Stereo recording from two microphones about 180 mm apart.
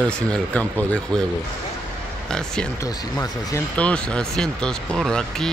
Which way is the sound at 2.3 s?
5° left (ahead or behind).